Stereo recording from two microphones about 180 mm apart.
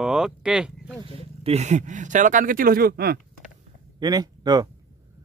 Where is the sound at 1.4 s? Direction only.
40° right (ahead or behind); by 3.2 s 60° right (ahead or behind).